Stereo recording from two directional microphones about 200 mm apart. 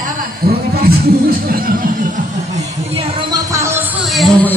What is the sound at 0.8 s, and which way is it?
Music, 45° right (ahead or behind).